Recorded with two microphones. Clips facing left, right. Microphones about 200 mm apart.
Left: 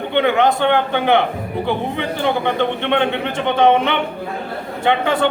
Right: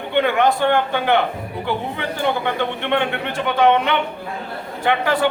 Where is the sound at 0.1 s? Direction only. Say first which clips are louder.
Left 1 dB; 20° left (ahead or behind).